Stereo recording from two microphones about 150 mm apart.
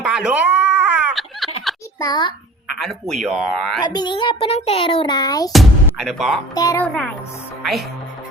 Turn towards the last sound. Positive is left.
turn(degrees=0)  # may be behind; listen again after turning